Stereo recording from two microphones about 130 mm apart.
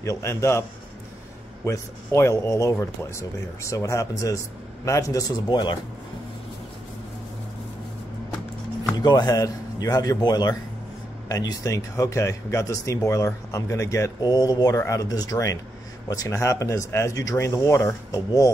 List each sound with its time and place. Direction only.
0.0 s speech: 25° left (ahead or behind)
8.9 s speech: 35° left (ahead or behind)